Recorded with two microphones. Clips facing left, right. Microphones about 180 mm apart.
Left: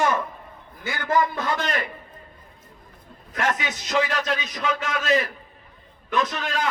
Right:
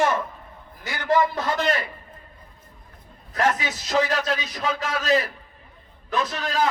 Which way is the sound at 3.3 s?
40° right (ahead or behind).